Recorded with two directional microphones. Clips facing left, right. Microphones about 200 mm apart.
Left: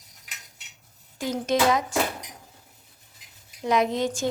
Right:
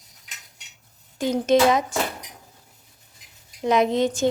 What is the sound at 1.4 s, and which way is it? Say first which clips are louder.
Speech: right 4 dB; 20° right (ahead or behind).